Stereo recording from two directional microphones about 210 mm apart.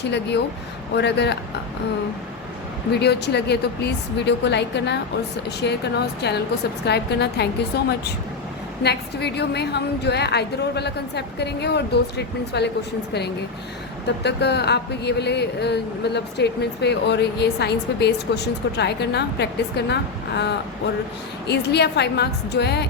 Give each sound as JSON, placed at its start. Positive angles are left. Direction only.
{"t": 0.0, "sound": "speech", "side_deg": 55}
{"t": 2.9, "sound": "speech", "side_deg": 50}
{"t": 14.3, "sound": "speech", "side_deg": 55}